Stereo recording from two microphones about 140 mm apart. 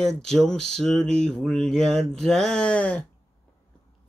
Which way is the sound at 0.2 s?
5° left (ahead or behind).